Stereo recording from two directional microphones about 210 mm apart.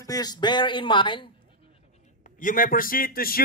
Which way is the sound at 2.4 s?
40° left (ahead or behind).